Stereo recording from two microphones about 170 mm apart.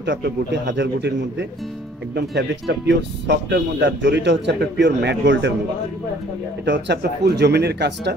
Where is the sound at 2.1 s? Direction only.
70° right (ahead or behind); by 5.5 s 90° right.